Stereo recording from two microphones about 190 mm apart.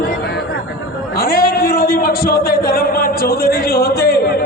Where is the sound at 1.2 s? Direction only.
50° left (ahead or behind).